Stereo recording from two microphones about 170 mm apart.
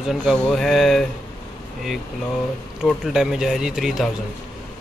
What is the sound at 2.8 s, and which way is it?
A man's voice, centre (ahead or behind).